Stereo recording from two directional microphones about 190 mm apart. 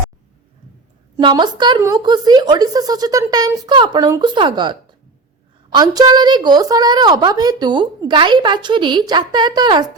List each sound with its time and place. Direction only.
1.1 s a woman's voice: 25° right (ahead or behind)